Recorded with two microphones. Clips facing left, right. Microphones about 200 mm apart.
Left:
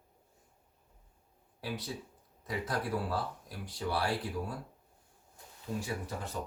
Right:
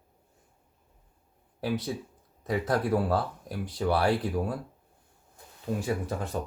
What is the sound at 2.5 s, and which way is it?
Speech, 60° right (ahead or behind).